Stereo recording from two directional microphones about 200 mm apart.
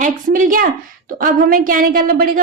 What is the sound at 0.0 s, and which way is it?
A woman's voice, 40° right (ahead or behind).